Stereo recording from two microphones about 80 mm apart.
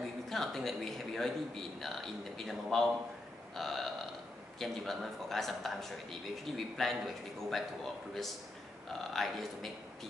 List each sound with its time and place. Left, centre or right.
0.0 s speech: centre